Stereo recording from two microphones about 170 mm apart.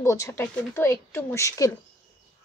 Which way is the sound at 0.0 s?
15° left (ahead or behind).